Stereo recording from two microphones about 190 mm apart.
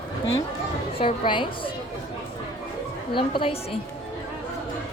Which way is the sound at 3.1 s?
25° left (ahead or behind).